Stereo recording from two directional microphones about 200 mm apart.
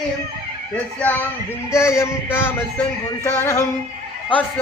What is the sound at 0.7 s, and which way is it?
Speech, 5° left (ahead or behind).